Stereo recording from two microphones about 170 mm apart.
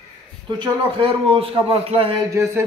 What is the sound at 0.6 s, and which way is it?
A man's voice, 30° right (ahead or behind).